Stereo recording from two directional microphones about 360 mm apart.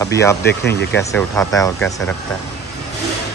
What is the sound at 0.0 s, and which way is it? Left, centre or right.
Speech, centre.